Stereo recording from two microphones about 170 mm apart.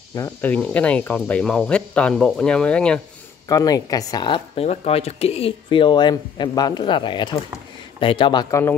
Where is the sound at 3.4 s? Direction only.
20° left (ahead or behind).